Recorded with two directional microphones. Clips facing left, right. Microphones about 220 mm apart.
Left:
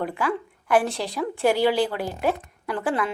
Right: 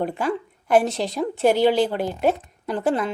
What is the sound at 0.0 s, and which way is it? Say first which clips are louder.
A woman's voice: right 2 dB; 25° right (ahead or behind).